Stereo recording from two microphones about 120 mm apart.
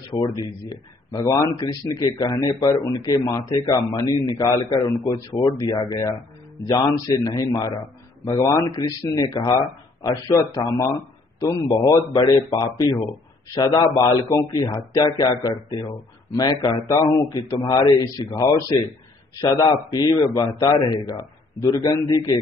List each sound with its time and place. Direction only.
0.1 s a man's voice: 30° left (ahead or behind)
19.6 s a man's voice: 35° left (ahead or behind)